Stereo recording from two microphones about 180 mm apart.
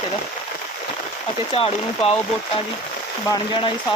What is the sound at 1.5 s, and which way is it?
Speech, 30° left (ahead or behind).